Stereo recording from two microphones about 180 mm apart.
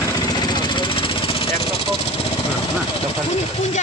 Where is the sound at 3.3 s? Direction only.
40° left (ahead or behind).